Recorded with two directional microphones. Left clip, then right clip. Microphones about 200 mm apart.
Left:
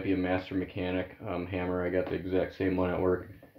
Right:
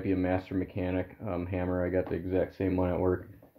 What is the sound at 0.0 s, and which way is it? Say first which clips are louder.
Speech: even; 50° right (ahead or behind).